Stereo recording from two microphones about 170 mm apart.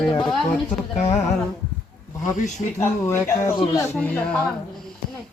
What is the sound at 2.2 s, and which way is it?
Speech, 45° left (ahead or behind).